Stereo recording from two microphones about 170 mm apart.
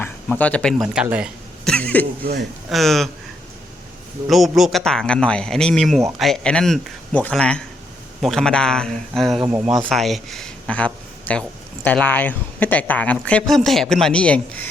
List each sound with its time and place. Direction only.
0.0 s speech: 10° left (ahead or behind)
1.7 s a man's voice: 10° left (ahead or behind)
4.3 s a man's voice: centre (ahead or behind)